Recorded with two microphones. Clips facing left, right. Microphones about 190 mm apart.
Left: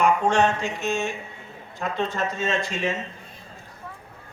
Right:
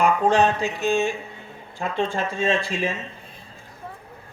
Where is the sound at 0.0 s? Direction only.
35° right (ahead or behind).